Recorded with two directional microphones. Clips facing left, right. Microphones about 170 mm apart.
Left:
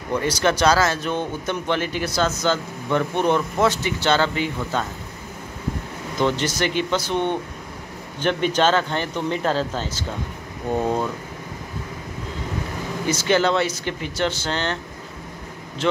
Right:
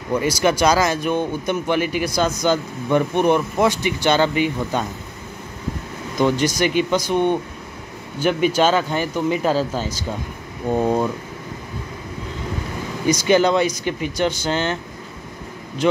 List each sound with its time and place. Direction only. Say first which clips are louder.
0.1 s speech: right 2 dB; 10° right (ahead or behind)
6.1 s speech: right 3 dB; 10° right (ahead or behind)
13.0 s speech: right 4 dB; 15° right (ahead or behind)
15.8 s speech: right 4 dB; 15° right (ahead or behind)